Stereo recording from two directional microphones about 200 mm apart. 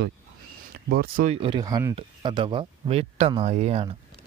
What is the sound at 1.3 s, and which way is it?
Speech, 25° right (ahead or behind).